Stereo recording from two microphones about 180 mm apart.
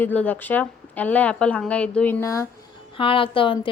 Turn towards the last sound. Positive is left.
turn(degrees=30)  # may be behind; listen again after turning